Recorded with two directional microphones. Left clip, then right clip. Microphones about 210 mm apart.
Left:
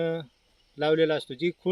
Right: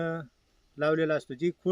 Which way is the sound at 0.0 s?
5° left (ahead or behind).